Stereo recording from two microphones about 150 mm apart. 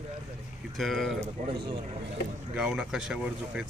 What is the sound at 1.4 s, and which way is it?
Speech, 35° right (ahead or behind).